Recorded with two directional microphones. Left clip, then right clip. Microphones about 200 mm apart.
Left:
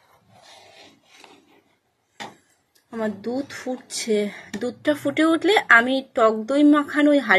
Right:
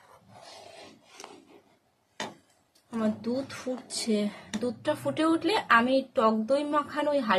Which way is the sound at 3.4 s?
20° left (ahead or behind).